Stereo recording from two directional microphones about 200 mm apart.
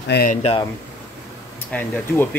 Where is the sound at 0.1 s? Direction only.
45° left (ahead or behind).